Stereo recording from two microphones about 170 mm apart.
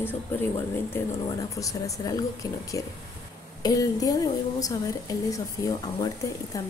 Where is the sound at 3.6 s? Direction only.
20° left (ahead or behind).